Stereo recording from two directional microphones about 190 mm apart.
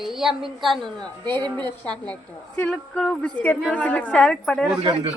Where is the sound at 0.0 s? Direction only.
Centre (ahead or behind).